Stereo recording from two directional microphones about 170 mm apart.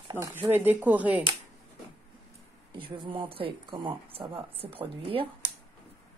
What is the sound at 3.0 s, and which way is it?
Speech, 30° right (ahead or behind).